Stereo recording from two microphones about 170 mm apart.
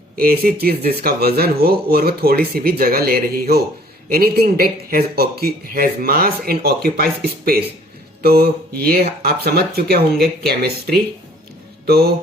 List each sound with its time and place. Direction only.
0.2 s speech: 60° right (ahead or behind)
8.2 s speech: 65° right (ahead or behind)